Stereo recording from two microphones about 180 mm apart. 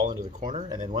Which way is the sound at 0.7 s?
20° right (ahead or behind).